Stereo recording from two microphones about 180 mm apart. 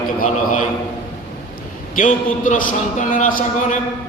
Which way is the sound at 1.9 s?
50° left (ahead or behind).